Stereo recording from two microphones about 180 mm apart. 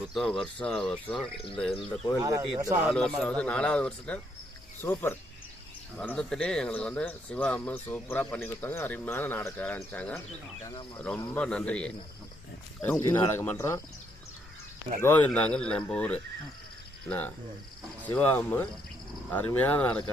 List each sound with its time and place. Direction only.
0.1 s speech: centre (ahead or behind)
2.1 s speech: 20° right (ahead or behind)
2.8 s speech: centre (ahead or behind)
15.0 s speech: 10° left (ahead or behind)